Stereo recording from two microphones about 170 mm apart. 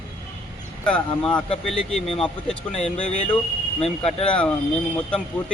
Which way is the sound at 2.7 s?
40° left (ahead or behind).